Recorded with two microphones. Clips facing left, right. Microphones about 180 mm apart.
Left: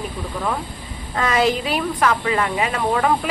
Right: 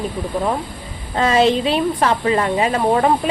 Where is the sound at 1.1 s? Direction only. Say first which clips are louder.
Right 4 dB; 25° right (ahead or behind).